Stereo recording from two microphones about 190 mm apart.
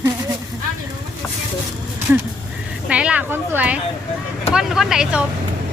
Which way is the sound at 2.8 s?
5° right (ahead or behind).